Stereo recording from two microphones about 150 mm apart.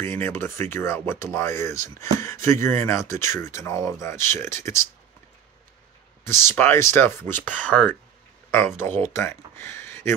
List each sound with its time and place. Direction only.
0.0 s speech: 15° left (ahead or behind)
6.2 s speech: 15° left (ahead or behind)